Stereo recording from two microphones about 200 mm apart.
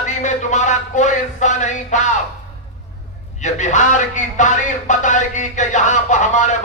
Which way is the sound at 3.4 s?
35° left (ahead or behind).